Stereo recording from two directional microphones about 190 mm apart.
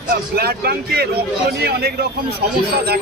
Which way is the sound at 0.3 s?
55° right (ahead or behind).